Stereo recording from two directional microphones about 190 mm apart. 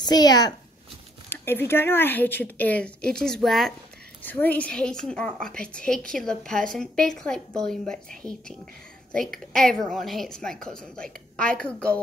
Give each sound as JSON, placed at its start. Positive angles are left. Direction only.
{"t": 0.0, "sound": "a child's voice", "side_deg": 20}